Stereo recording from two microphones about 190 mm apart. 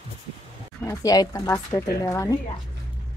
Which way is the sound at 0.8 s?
20° left (ahead or behind).